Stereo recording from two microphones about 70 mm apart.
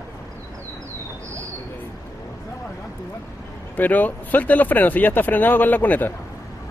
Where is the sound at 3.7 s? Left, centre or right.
Left.